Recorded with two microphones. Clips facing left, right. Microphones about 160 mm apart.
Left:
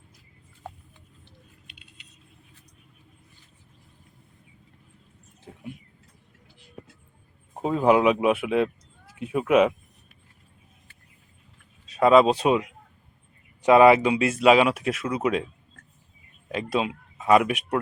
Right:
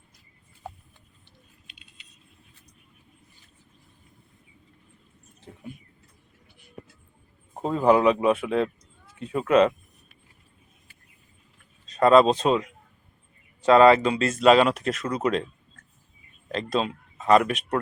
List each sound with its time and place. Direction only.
1.6 s a sound: 65° left (ahead or behind)
7.6 s speech: 5° left (ahead or behind)
11.9 s speech: 5° left (ahead or behind)
16.5 s speech: 10° left (ahead or behind)